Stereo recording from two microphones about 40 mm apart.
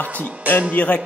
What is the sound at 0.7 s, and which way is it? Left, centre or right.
Speech, left.